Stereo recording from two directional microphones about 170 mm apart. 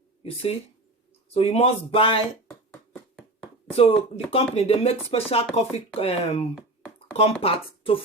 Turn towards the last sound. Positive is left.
turn(degrees=35)  # may be behind; listen again after turning